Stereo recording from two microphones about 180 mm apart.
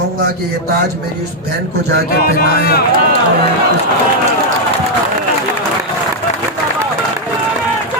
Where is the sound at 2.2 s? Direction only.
55° left (ahead or behind).